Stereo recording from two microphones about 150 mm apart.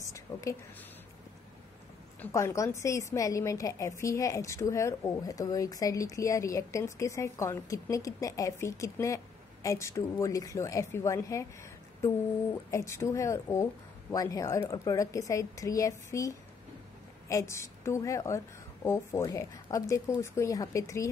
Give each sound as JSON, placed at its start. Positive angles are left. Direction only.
{"t": 0.1, "sound": "a sound", "side_deg": 20}
{"t": 2.1, "sound": "a woman's voice", "side_deg": 20}
{"t": 12.7, "sound": "a woman's voice", "side_deg": 20}